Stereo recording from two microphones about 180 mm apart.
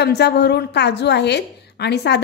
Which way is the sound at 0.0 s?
65° left (ahead or behind).